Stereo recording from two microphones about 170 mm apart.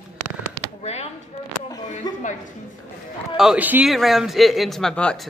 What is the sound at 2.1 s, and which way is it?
Speech, 25° left (ahead or behind).